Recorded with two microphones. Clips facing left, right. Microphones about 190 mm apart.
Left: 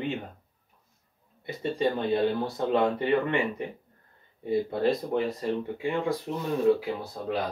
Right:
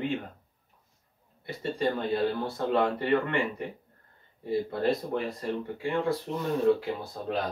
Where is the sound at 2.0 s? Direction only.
20° left (ahead or behind).